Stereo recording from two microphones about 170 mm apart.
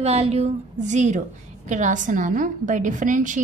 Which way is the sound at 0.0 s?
40° right (ahead or behind).